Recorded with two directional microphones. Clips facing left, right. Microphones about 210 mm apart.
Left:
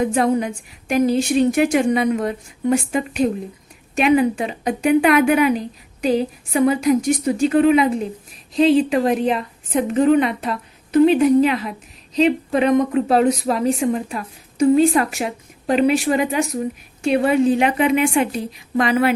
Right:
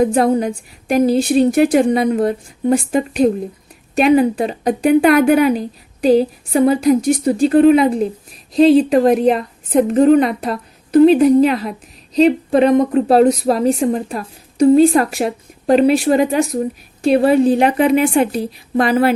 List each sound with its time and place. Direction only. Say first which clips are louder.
0.0 s a woman's voice: right 4 dB; 35° right (ahead or behind)